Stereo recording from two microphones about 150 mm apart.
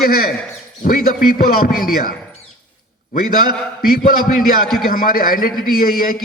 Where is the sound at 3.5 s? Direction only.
75° left (ahead or behind).